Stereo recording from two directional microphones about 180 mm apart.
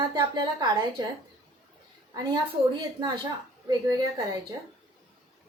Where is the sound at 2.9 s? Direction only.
20° right (ahead or behind).